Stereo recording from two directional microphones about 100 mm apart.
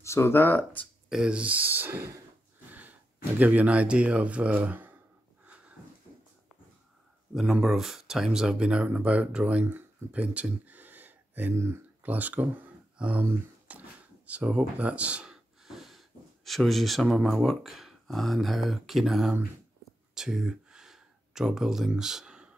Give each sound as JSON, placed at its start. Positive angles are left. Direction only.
{"t": 0.0, "sound": "speech", "side_deg": 25}
{"t": 1.0, "sound": "speech", "side_deg": -5}
{"t": 3.3, "sound": "speech", "side_deg": -15}
{"t": 7.6, "sound": "speech", "side_deg": -5}
{"t": 13.2, "sound": "a sound", "side_deg": -15}
{"t": 16.4, "sound": "speech", "side_deg": 0}
{"t": 20.2, "sound": "a sound", "side_deg": -5}